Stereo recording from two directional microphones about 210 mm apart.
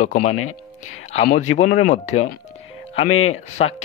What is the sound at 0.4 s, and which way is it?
Speech, 90° left.